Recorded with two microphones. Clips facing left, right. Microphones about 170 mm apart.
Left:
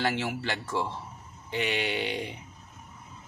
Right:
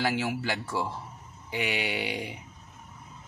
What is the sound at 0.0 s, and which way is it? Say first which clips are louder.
Speech: right 1 dB; 5° right (ahead or behind).